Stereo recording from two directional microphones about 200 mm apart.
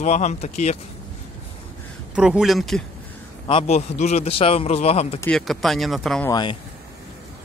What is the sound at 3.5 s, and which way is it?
A man's voice, 30° left (ahead or behind).